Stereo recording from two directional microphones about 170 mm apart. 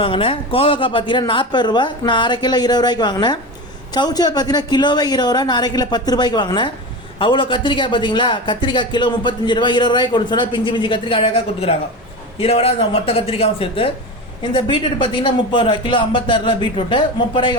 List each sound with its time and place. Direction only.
0.0 s speech: 35° left (ahead or behind)